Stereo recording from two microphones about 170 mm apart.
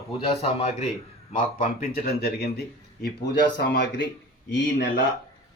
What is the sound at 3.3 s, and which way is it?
Speech, 85° left.